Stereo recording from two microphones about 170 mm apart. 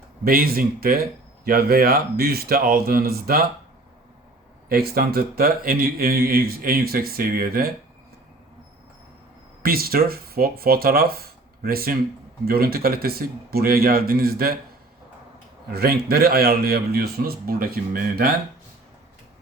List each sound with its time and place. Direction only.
0.3 s a man's voice: 60° right (ahead or behind)
4.7 s a man's voice: 60° right (ahead or behind)
9.6 s a man's voice: 60° right (ahead or behind)
15.7 s a man's voice: 65° right (ahead or behind)